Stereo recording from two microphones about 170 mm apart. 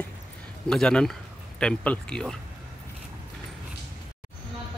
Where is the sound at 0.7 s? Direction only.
5° left (ahead or behind).